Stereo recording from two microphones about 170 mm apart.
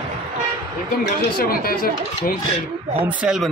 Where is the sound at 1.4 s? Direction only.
60° left (ahead or behind).